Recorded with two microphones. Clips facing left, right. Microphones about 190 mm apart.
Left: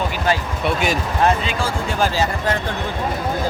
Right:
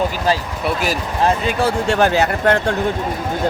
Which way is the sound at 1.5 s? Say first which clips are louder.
Right 6 dB; 65° right (ahead or behind).